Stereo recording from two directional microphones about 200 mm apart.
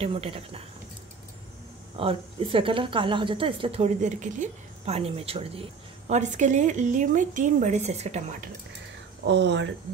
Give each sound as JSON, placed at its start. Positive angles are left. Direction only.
{"t": 0.0, "sound": "speech", "side_deg": -30}
{"t": 2.0, "sound": "speech", "side_deg": -25}
{"t": 9.2, "sound": "speech", "side_deg": -60}